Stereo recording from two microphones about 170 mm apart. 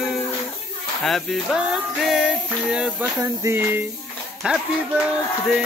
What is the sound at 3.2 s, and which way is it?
Music, 20° right (ahead or behind).